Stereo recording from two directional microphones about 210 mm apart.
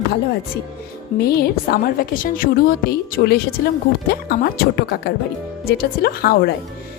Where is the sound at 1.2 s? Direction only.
45° left (ahead or behind).